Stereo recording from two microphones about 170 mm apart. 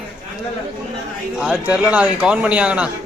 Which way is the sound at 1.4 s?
5° right (ahead or behind).